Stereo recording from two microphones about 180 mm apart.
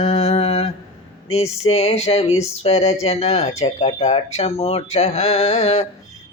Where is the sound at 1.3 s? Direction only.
35° left (ahead or behind).